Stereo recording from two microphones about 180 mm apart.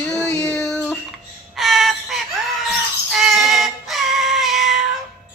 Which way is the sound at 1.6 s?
Centre (ahead or behind).